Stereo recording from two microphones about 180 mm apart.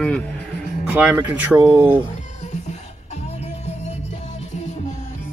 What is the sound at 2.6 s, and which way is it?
Music, 40° left (ahead or behind).